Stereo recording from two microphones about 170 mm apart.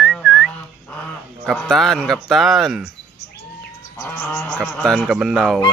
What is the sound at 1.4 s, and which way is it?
A man's voice, 5° left (ahead or behind).